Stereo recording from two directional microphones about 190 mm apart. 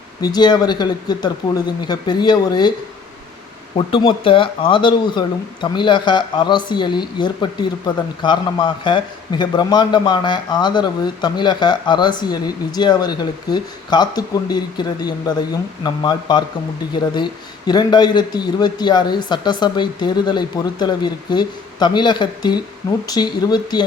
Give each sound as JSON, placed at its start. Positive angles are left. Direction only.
{"t": 0.2, "sound": "speech", "side_deg": 20}
{"t": 3.8, "sound": "speech", "side_deg": 30}
{"t": 17.7, "sound": "speech", "side_deg": 20}